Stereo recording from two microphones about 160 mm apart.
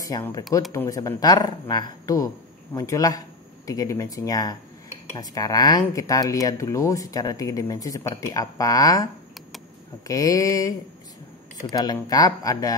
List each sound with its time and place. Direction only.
0.0 s speech: 20° left (ahead or behind)
11.7 s speech: 25° left (ahead or behind)